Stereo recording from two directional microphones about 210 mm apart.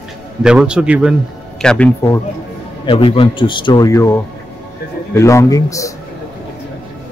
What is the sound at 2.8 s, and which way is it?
Speech, 25° left (ahead or behind).